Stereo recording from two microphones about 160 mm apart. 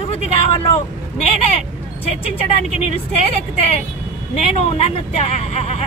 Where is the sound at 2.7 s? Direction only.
40° left (ahead or behind).